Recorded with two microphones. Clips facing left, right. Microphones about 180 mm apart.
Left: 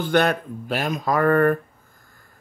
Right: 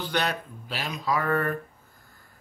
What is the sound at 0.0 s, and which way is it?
Speech, 50° left (ahead or behind).